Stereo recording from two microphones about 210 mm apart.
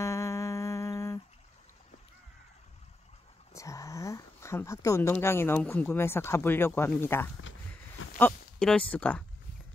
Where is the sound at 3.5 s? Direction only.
15° left (ahead or behind).